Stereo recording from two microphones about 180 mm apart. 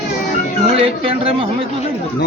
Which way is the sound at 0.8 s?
30° right (ahead or behind).